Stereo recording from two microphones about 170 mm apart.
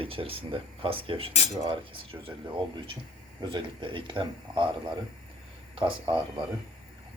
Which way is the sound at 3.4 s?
30° right (ahead or behind).